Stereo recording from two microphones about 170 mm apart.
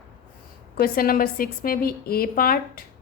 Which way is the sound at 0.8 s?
60° left (ahead or behind).